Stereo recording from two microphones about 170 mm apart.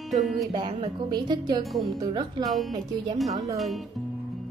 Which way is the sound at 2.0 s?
25° right (ahead or behind).